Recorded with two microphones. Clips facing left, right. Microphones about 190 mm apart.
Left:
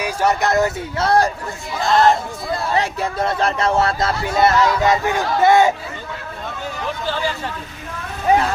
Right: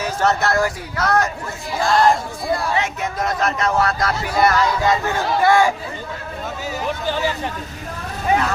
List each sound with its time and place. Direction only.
0.0 s speech: 10° left (ahead or behind)
2.7 s speech: 35° left (ahead or behind)
6.7 s hubbub: 10° right (ahead or behind)